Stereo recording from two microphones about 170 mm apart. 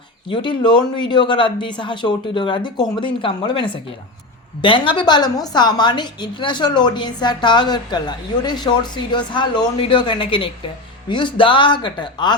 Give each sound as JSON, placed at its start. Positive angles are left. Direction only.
{"t": 0.3, "sound": "a woman's voice", "side_deg": 30}